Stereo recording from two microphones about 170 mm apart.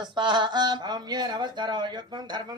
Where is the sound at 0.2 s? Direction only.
25° right (ahead or behind).